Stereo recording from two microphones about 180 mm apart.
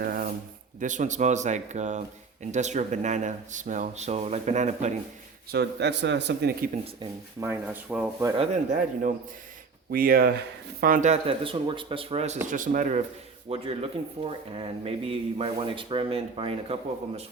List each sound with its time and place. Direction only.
0.0 s a sound: 55° right (ahead or behind)
0.8 s speech: 45° right (ahead or behind)
5.5 s speech: 70° right (ahead or behind)
7.3 s speech: 10° right (ahead or behind)
8.4 s speech: 45° right (ahead or behind)
12.5 s speech: 45° right (ahead or behind)
13.5 s speech: 30° right (ahead or behind)